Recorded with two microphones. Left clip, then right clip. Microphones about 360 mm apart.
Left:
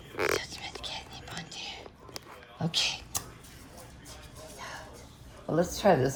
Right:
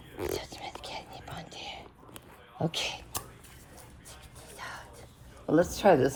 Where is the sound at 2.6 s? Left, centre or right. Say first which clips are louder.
Left 3 dB; centre.